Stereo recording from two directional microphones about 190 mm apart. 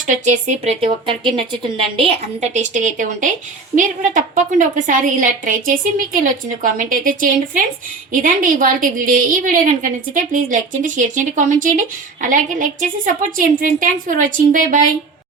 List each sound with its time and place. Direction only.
0.1 s a woman's voice: 40° right (ahead or behind)